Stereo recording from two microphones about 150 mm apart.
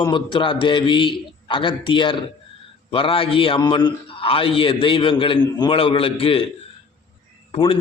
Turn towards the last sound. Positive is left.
turn(degrees=35)  # may be behind; listen again after turning